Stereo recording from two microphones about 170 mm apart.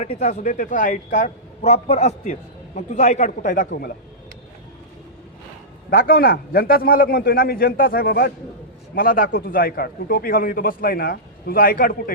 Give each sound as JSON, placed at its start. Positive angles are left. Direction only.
{"t": 0.0, "sound": "a man's voice", "side_deg": 45}
{"t": 5.9, "sound": "a man's voice", "side_deg": 60}